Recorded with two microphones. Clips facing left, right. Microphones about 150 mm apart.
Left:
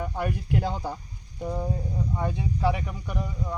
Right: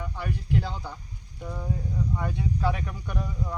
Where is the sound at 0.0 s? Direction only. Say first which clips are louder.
Left 4 dB; 55° left (ahead or behind).